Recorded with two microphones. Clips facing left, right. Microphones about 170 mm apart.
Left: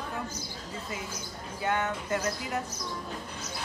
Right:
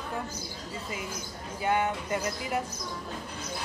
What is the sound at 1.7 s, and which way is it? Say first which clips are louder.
Speech: right 3 dB; 15° right (ahead or behind).